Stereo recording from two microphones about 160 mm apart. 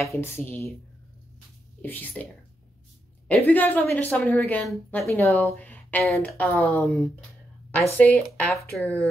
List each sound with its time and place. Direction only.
0.0 s a woman's voice: 15° left (ahead or behind)
1.8 s a woman's voice: 10° left (ahead or behind)
3.3 s a woman's voice: 10° left (ahead or behind)